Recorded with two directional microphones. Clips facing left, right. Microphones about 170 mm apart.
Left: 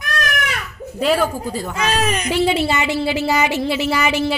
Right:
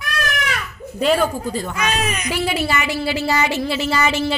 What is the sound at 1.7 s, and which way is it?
Speech, 30° left (ahead or behind).